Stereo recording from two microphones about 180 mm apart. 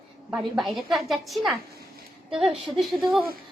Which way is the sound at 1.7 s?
60° right (ahead or behind).